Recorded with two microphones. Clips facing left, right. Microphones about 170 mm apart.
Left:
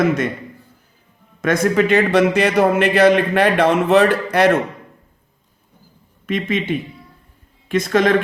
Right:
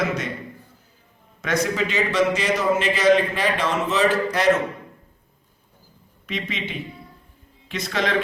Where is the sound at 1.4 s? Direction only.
50° left (ahead or behind).